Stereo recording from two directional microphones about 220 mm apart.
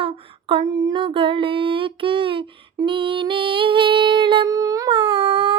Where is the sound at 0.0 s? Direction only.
25° right (ahead or behind).